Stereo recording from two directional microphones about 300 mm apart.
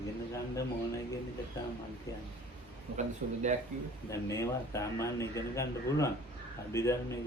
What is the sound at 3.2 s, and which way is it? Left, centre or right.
Speech, right.